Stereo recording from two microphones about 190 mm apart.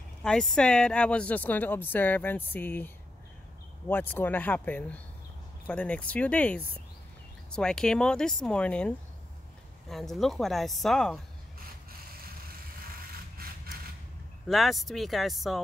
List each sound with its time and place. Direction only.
0.2 s speech: 5° left (ahead or behind)
3.9 s speech: 10° left (ahead or behind)
13.4 s mechanisms: 50° right (ahead or behind)
14.5 s speech: centre (ahead or behind)